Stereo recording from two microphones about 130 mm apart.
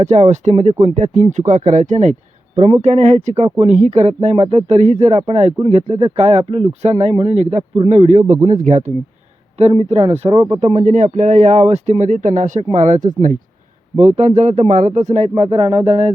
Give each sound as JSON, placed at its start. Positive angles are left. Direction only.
{"t": 0.0, "sound": "speech", "side_deg": -60}
{"t": 9.6, "sound": "speech", "side_deg": -55}
{"t": 14.0, "sound": "speech", "side_deg": -55}
{"t": 15.9, "sound": "speech", "side_deg": -60}